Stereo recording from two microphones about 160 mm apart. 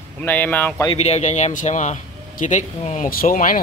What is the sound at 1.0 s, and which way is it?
Speech, 45° left (ahead or behind).